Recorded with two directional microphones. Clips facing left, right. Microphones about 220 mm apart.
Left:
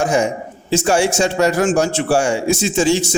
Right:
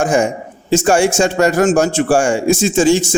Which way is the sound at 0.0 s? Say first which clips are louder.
Right 2 dB; 50° right (ahead or behind).